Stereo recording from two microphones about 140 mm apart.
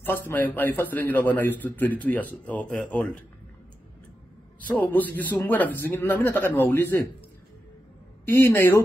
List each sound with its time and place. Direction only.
0.0 s a man's voice: 15° left (ahead or behind)
4.6 s a man's voice: 10° left (ahead or behind)
8.3 s a man's voice: 15° left (ahead or behind)